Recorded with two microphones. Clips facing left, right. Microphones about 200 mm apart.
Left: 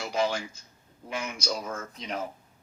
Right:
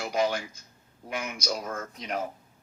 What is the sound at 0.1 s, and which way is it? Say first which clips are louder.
Speech: right 1 dB; 5° right (ahead or behind).